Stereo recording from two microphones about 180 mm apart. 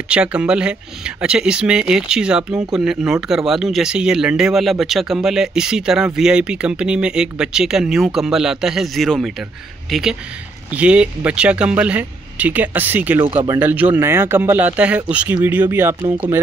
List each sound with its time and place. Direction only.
0.1 s speech: 5° right (ahead or behind)
13.2 s speech: 30° right (ahead or behind)
13.5 s speech: 10° right (ahead or behind)